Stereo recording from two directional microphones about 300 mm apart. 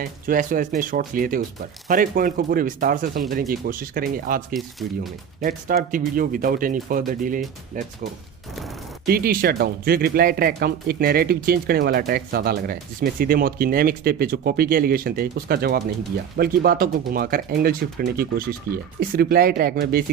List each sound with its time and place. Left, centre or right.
0.0 s speech: right
9.0 s speech: right